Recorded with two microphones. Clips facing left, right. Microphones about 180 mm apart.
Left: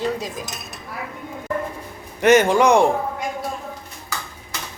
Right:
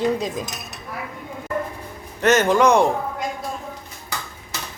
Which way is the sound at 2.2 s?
10° left (ahead or behind).